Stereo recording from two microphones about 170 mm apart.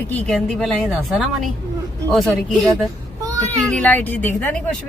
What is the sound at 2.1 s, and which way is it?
Speech, centre (ahead or behind).